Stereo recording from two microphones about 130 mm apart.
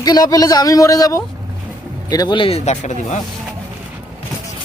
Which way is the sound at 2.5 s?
55° left (ahead or behind).